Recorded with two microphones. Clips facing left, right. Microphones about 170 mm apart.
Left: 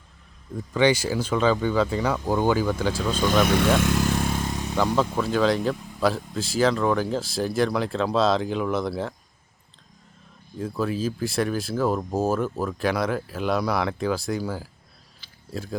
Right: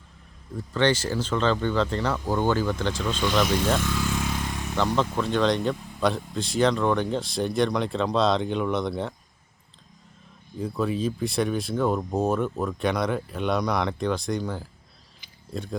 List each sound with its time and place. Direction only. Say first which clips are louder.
0.5 s speech: left 2 dB; 10° left (ahead or behind)
3.4 s speech: left 3 dB; 65° left (ahead or behind)
3.9 s motorcycle: left 4 dB; 40° left (ahead or behind)
4.4 s a sound: left 3 dB; 25° left (ahead or behind)
4.7 s speech: left 1 dB; 10° left (ahead or behind)
10.6 s speech: even; centre (ahead or behind)
15.2 s a sound: even; 15° right (ahead or behind)
15.5 s speech: left 1 dB; 5° left (ahead or behind)